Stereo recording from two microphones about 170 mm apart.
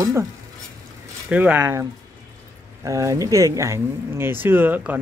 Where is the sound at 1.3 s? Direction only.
10° right (ahead or behind).